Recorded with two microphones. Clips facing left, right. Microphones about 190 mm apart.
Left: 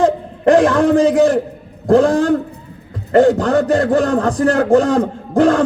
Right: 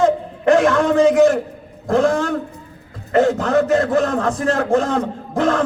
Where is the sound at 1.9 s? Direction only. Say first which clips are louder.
Left 5 dB; 35° left (ahead or behind).